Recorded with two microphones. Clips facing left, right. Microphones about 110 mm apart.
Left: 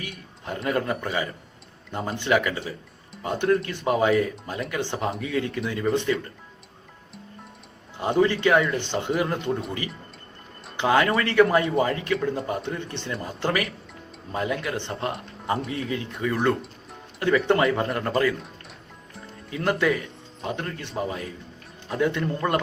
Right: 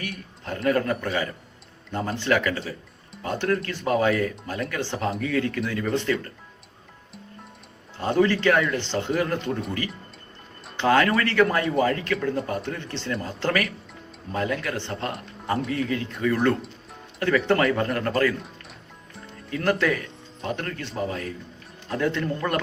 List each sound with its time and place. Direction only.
0.0 s a man's voice: 20° left (ahead or behind)
7.9 s speech: 15° left (ahead or behind)
10.8 s speech: 15° left (ahead or behind)
19.5 s speech: 15° left (ahead or behind)